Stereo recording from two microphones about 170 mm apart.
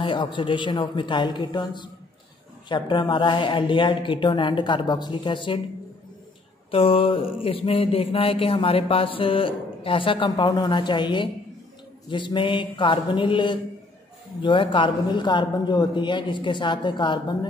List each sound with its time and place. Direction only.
0.0 s a man's voice: 30° left (ahead or behind)
6.7 s mantra: 35° left (ahead or behind)
12.1 s a man's voice: 30° left (ahead or behind)